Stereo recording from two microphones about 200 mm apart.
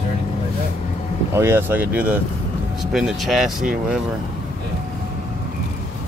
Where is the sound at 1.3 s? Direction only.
10° right (ahead or behind).